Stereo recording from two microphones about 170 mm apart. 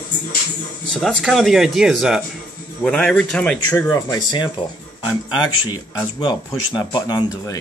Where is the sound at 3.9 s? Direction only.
20° left (ahead or behind).